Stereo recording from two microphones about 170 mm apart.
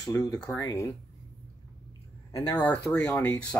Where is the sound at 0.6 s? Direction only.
20° left (ahead or behind).